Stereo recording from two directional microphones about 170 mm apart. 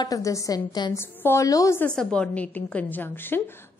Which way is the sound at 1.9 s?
5° left (ahead or behind).